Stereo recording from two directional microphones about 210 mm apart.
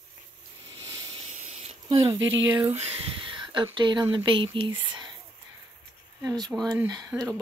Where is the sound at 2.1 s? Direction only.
65° right (ahead or behind).